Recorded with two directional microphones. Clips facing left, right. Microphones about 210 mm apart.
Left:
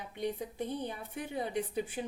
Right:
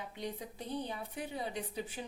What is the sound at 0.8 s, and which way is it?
Speech, 50° left (ahead or behind).